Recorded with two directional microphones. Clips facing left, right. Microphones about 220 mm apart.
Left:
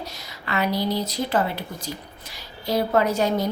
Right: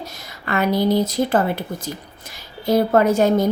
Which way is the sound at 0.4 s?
50° right (ahead or behind).